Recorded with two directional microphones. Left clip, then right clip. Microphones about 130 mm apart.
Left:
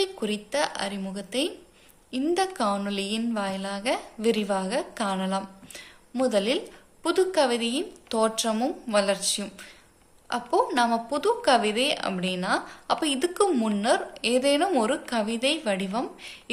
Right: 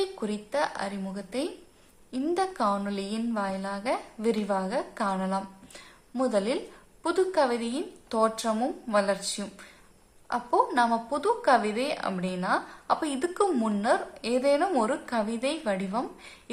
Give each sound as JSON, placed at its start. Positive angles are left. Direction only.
{"t": 0.0, "sound": "a woman's voice", "side_deg": 15}